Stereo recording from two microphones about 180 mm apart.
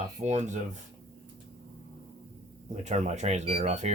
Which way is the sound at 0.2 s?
35° right (ahead or behind).